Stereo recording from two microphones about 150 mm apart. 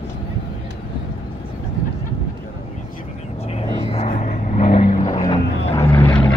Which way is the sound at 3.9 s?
45° left (ahead or behind).